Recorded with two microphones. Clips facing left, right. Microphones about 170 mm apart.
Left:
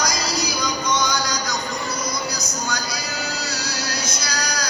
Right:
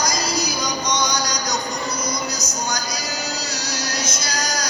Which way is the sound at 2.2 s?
20° right (ahead or behind).